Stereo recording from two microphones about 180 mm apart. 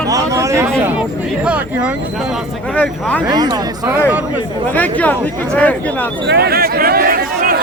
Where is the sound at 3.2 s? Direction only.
20° right (ahead or behind).